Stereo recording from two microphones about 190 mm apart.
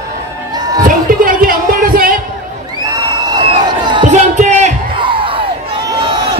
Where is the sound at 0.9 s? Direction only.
50° right (ahead or behind).